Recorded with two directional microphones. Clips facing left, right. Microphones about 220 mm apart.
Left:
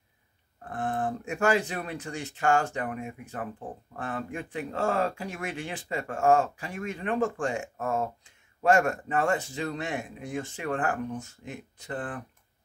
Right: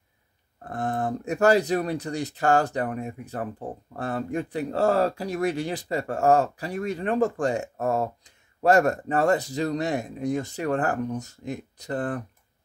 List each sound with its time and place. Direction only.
0.7 s speech: 40° right (ahead or behind)